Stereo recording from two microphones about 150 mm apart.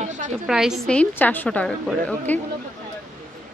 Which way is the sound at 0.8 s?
10° left (ahead or behind).